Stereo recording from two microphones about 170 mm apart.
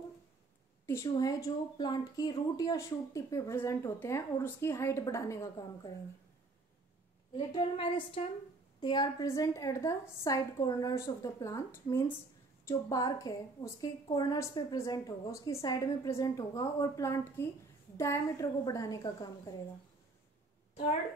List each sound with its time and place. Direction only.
0.8 s speech: 20° left (ahead or behind)
7.3 s a woman's voice: 30° left (ahead or behind)